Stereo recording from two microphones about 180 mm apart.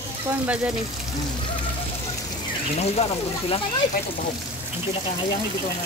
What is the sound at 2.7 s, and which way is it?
Speech, 35° left (ahead or behind).